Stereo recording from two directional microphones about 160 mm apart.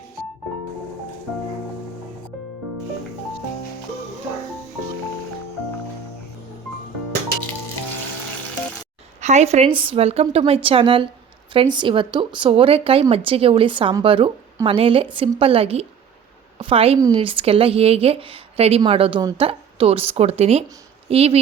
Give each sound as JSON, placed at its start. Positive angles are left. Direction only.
{"t": 9.2, "sound": "speech", "side_deg": -45}